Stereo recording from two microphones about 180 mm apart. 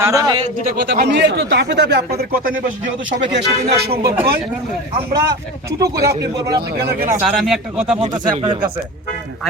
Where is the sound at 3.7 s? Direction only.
60° right (ahead or behind).